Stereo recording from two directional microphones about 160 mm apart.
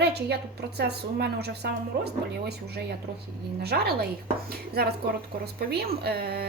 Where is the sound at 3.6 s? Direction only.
80° right.